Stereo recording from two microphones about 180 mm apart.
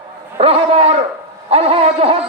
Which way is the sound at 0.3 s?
35° right (ahead or behind).